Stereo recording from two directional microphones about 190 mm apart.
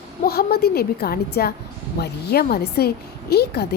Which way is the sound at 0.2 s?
55° left (ahead or behind).